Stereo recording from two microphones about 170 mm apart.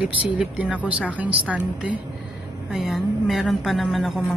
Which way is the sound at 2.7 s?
Centre (ahead or behind).